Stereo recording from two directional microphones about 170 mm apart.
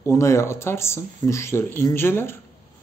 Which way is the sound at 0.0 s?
15° left (ahead or behind).